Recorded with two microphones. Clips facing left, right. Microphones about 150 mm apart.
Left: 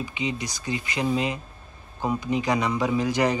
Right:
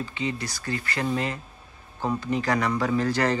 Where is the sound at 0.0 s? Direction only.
15° left (ahead or behind).